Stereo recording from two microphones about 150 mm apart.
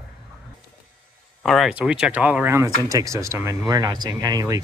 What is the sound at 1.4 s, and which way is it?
Speech, centre (ahead or behind).